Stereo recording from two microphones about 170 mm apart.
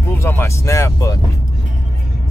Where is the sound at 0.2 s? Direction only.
15° left (ahead or behind).